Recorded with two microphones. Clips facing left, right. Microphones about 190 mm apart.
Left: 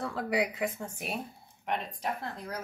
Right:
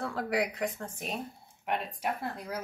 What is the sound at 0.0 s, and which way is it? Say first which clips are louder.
Speech: even; centre (ahead or behind).